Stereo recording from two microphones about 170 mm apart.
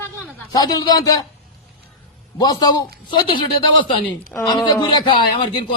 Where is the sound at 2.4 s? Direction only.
20° left (ahead or behind).